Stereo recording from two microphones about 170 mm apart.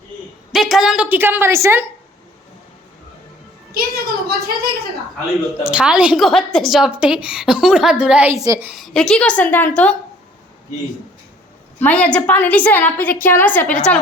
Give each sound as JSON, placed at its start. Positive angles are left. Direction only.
{"t": 0.5, "sound": "a woman's voice", "side_deg": 0}
{"t": 3.8, "sound": "a sound", "side_deg": -65}
{"t": 5.6, "sound": "a woman's voice", "side_deg": -5}
{"t": 8.7, "sound": "a woman's voice", "side_deg": 0}
{"t": 11.8, "sound": "a woman's voice", "side_deg": 10}